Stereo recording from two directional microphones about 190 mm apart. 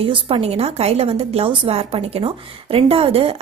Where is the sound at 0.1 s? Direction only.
30° right (ahead or behind).